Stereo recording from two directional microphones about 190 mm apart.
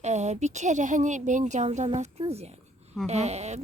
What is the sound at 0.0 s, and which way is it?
Speech, 35° right (ahead or behind).